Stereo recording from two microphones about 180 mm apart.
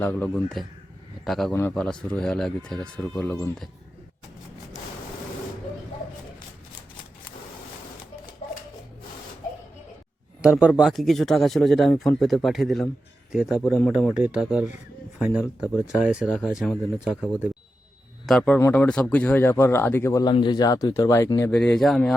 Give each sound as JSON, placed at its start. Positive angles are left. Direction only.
{"t": 0.0, "sound": "speech", "side_deg": 10}
{"t": 10.4, "sound": "speech", "side_deg": -10}
{"t": 18.3, "sound": "speech", "side_deg": 5}
{"t": 21.5, "sound": "speech", "side_deg": 5}